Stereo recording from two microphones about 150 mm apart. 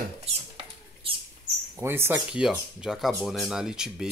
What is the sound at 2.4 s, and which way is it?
Speech, 5° right (ahead or behind).